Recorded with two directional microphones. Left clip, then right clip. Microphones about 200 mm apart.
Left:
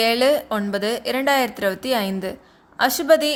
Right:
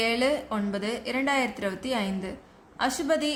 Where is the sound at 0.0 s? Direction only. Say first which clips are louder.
Left 8 dB; 45° left (ahead or behind).